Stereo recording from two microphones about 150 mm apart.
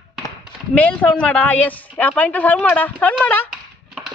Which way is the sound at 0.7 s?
10° left (ahead or behind).